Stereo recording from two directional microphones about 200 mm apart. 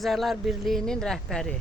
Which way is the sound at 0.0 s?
Centre (ahead or behind).